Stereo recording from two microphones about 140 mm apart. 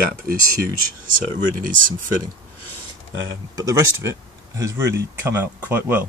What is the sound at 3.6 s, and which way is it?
Speech, 25° right (ahead or behind).